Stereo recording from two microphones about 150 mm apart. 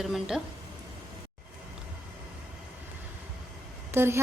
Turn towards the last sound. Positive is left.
turn(degrees=-15)  # may be behind; listen again after turning